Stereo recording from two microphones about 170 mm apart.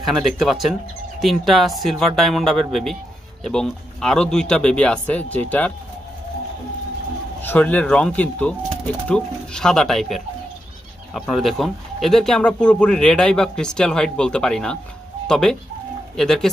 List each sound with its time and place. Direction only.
0.0 s speech: centre (ahead or behind)
7.4 s speech: 10° left (ahead or behind)